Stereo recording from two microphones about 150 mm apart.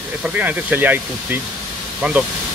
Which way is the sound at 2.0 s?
10° right (ahead or behind).